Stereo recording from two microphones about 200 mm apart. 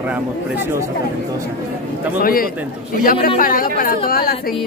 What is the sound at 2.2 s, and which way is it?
Speech, 45° left (ahead or behind).